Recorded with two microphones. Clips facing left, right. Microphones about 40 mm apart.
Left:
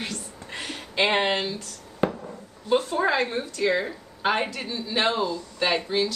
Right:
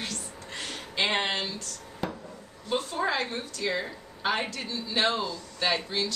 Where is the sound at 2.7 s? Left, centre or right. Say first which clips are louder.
Left 6 dB; centre.